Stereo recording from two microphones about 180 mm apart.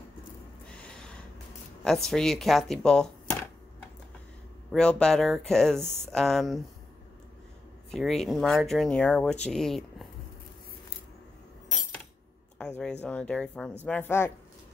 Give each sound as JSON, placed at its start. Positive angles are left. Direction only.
{"t": 1.9, "sound": "speech", "side_deg": 5}
{"t": 4.7, "sound": "speech", "side_deg": 5}
{"t": 7.9, "sound": "speech", "side_deg": 0}
{"t": 12.5, "sound": "a sound", "side_deg": 5}
{"t": 13.0, "sound": "speech", "side_deg": 5}